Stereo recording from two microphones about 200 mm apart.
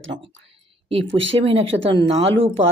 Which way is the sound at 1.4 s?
30° right (ahead or behind).